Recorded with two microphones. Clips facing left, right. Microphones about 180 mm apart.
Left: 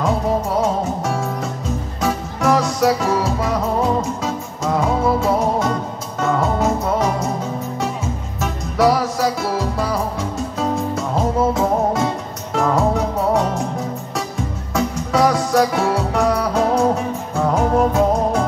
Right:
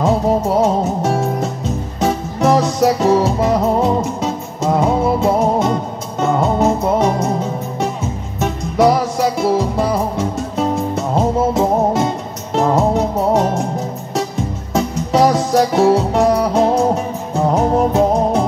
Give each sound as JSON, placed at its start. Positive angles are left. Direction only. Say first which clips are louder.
{"t": 0.0, "sound": "music", "louder": "right 4 dB", "side_deg": -25}
{"t": 6.6, "sound": "music", "louder": "right 4 dB", "side_deg": -30}
{"t": 8.4, "sound": "music", "louder": "right 4 dB", "side_deg": -20}
{"t": 14.7, "sound": "music", "louder": "right 3 dB", "side_deg": -20}